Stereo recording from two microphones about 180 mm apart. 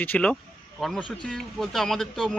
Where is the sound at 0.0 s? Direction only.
10° left (ahead or behind).